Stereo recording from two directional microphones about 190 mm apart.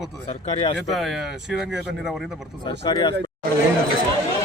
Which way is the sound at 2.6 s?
25° left (ahead or behind).